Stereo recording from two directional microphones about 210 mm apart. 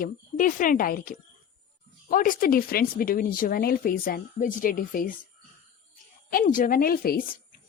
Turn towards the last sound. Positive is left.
turn(degrees=45)  # may be behind; listen again after turning